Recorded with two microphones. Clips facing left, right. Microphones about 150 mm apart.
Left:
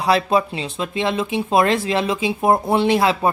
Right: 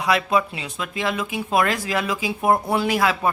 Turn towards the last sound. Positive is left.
turn(degrees=25)  # may be behind; listen again after turning